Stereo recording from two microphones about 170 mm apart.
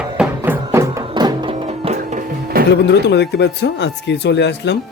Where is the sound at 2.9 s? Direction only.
85° left.